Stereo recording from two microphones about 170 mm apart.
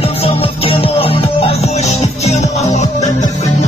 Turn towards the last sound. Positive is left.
turn(degrees=45)  # may be behind; listen again after turning